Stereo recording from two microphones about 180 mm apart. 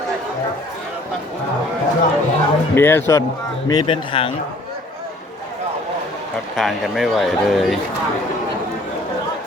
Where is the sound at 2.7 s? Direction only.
10° left (ahead or behind).